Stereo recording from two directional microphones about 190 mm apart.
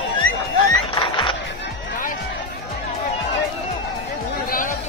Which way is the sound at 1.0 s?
25° left (ahead or behind).